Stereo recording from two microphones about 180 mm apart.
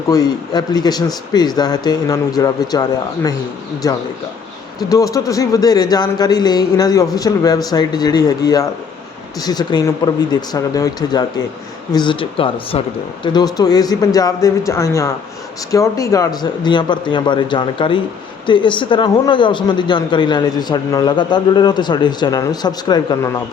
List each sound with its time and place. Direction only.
0.1 s speech: 20° left (ahead or behind)
3.8 s speech: 20° left (ahead or behind)